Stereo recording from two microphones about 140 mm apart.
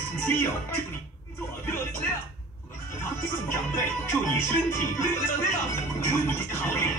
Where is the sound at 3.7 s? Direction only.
20° left (ahead or behind).